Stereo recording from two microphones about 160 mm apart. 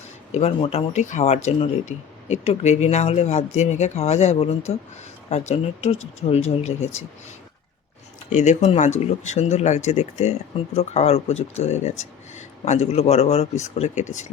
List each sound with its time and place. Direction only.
0.3 s speech: 45° left (ahead or behind)
8.3 s speech: 45° left (ahead or behind)